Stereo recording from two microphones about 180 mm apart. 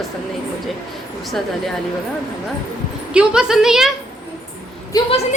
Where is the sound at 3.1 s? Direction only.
5° right (ahead or behind).